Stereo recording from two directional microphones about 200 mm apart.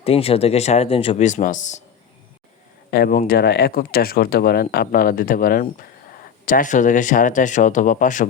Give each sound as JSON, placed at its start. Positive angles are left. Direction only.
{"t": 0.0, "sound": "speech", "side_deg": 30}
{"t": 2.9, "sound": "speech", "side_deg": 50}